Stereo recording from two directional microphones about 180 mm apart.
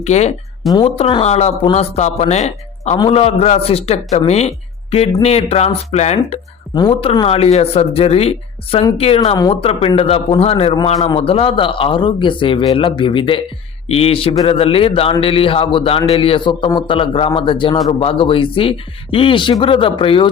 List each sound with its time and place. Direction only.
0.0 s a woman's voice: 35° left (ahead or behind)
6.7 s a man's voice: 20° left (ahead or behind)
7.1 s a woman's voice: 35° left (ahead or behind)